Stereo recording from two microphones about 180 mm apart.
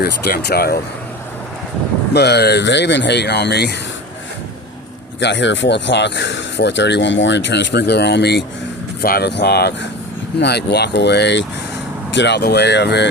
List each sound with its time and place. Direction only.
0.0 s speech: 60° left (ahead or behind)
2.1 s speech: 65° left (ahead or behind)
5.2 s speech: 85° left
9.0 s speech: 60° left (ahead or behind)